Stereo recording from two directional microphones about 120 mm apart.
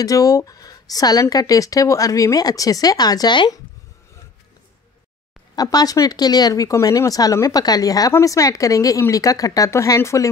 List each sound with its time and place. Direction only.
0.0 s speech: 30° left (ahead or behind)
5.6 s speech: 30° left (ahead or behind)